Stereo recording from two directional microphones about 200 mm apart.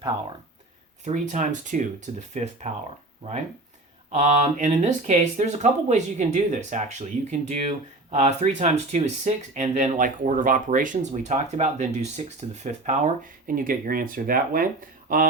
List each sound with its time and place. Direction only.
1.0 s speech: 40° right (ahead or behind)
4.1 s speech: 35° right (ahead or behind)